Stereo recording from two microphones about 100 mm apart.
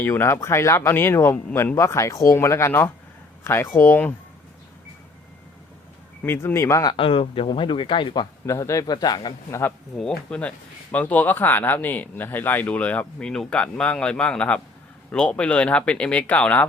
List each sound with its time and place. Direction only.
0.0 s speech: 25° left (ahead or behind)
6.2 s speech: 25° left (ahead or behind)
6.9 s speech: 65° left (ahead or behind)
8.4 s speech: 30° left (ahead or behind)
10.0 s speech: 10° left (ahead or behind)